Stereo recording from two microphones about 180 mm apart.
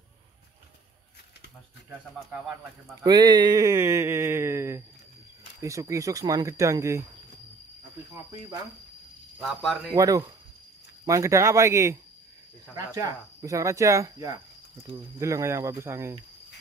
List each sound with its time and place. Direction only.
3.0 s a sound: 25° right (ahead or behind)
5.6 s speech: 20° right (ahead or behind)
9.4 s speech: centre (ahead or behind)
9.9 s speech: 20° right (ahead or behind)